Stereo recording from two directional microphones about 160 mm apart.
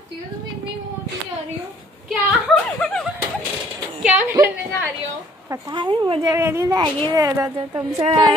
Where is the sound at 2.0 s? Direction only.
5° right (ahead or behind).